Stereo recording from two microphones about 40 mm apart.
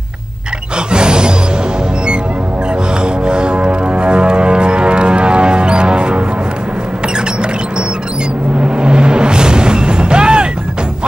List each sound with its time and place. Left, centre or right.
0.9 s music: right
3.3 s music: right
8.6 s music: right